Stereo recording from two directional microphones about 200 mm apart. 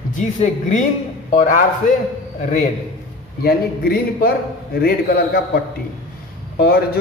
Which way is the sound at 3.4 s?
50° left (ahead or behind).